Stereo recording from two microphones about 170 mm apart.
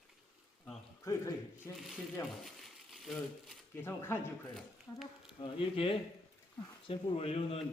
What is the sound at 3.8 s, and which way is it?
Speech, 15° left (ahead or behind).